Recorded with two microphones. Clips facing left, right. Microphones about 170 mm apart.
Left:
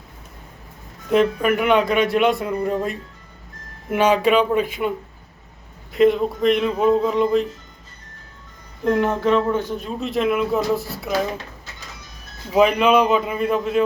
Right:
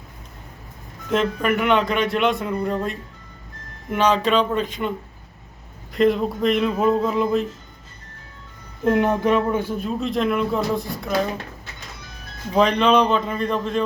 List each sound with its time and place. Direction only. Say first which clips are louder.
1.1 s a man's voice: left 3 dB; centre (ahead or behind)
8.8 s speech: even; 20° right (ahead or behind)
10.0 s speech: left 2 dB; centre (ahead or behind)
12.5 s a man's voice: left 1 dB; 5° left (ahead or behind)